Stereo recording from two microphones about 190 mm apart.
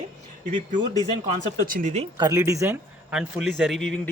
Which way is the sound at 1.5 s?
45° right (ahead or behind).